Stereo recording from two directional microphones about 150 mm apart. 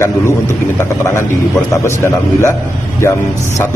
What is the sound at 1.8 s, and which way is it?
Speech, 20° left (ahead or behind).